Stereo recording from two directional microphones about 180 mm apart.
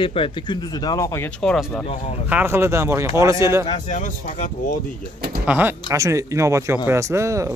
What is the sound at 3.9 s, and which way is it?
Speech, 45° left (ahead or behind).